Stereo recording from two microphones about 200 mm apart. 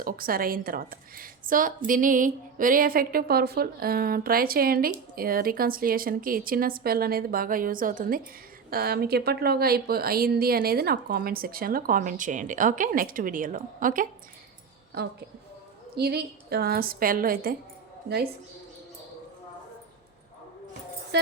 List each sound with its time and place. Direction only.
0.0 s a woman's voice: 45° right (ahead or behind)
15.0 s a woman's voice: 55° right (ahead or behind)